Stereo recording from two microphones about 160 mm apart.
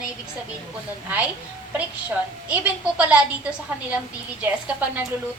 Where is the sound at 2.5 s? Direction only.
10° right (ahead or behind).